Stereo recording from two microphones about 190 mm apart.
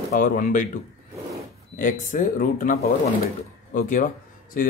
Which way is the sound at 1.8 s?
45° left (ahead or behind).